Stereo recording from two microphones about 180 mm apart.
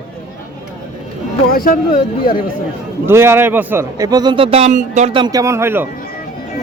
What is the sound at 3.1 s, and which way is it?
A man's voice, 15° right (ahead or behind).